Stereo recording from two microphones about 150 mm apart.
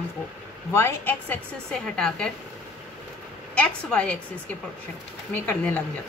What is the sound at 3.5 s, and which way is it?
Speech, 10° left (ahead or behind).